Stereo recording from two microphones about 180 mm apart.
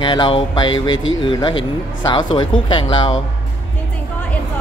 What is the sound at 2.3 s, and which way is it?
Speech, 25° left (ahead or behind).